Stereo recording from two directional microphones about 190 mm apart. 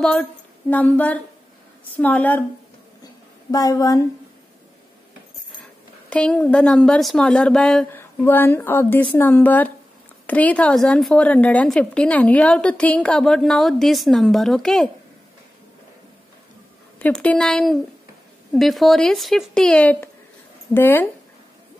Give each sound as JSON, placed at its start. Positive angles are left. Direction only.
{"t": 0.0, "sound": "a sound", "side_deg": 5}
{"t": 2.0, "sound": "speech", "side_deg": 10}
{"t": 3.5, "sound": "a woman's voice", "side_deg": 20}
{"t": 6.0, "sound": "a woman's voice", "side_deg": 5}
{"t": 17.0, "sound": "a woman's voice", "side_deg": 5}